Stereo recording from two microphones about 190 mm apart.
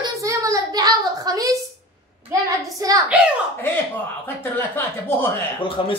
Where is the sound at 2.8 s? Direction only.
20° right (ahead or behind).